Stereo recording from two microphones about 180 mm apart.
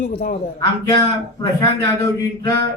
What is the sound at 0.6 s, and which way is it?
Speech, 20° left (ahead or behind).